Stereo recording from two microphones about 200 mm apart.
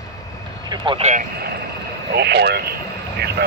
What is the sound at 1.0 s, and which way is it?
Speech, 45° right (ahead or behind).